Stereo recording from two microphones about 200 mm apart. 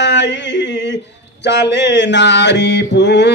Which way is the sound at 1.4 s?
60° left (ahead or behind).